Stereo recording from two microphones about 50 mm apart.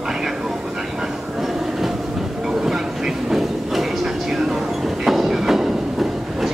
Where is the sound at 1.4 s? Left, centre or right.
Centre.